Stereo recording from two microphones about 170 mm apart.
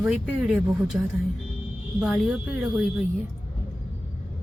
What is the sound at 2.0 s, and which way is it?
Speech, centre (ahead or behind).